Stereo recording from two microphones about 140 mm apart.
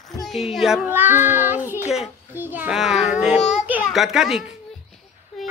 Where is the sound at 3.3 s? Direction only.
55° left (ahead or behind).